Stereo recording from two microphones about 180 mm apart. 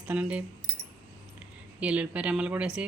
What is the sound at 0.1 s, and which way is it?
Speech, 5° right (ahead or behind).